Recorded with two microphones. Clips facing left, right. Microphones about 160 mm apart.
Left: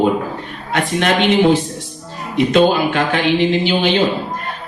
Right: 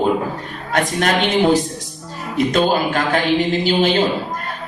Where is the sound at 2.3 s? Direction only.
40° right (ahead or behind).